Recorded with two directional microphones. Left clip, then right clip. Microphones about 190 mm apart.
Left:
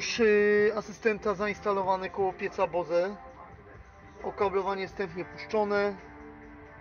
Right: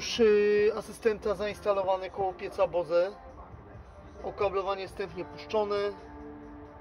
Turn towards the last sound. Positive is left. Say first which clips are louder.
# left 2 dB
turn(degrees=25)  # may be behind; listen again after turning